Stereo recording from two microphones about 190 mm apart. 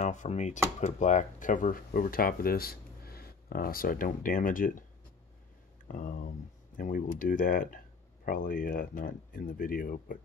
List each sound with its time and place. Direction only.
0.0 s speech: 40° left (ahead or behind)
5.9 s speech: 45° left (ahead or behind)